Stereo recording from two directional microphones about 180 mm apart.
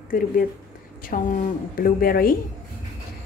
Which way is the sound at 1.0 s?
45° left (ahead or behind).